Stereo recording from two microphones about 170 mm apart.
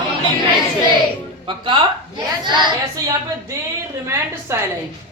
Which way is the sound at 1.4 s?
30° right (ahead or behind).